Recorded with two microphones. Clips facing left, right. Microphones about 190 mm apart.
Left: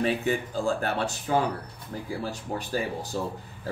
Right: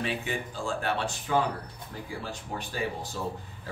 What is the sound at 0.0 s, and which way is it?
Speech, 40° left (ahead or behind).